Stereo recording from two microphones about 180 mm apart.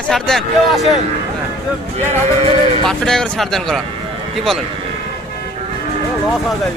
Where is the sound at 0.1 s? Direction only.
Centre (ahead or behind).